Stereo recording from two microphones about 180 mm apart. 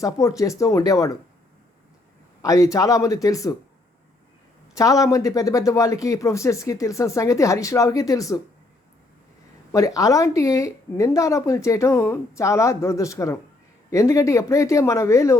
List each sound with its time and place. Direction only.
0.0 s speech: 20° left (ahead or behind)
2.4 s speech: 20° left (ahead or behind)
4.7 s speech: 20° left (ahead or behind)
9.7 s speech: 20° left (ahead or behind)